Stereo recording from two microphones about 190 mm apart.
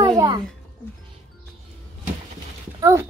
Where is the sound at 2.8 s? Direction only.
15° right (ahead or behind).